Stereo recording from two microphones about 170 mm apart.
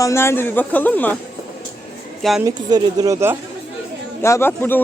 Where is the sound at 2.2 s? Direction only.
Centre (ahead or behind).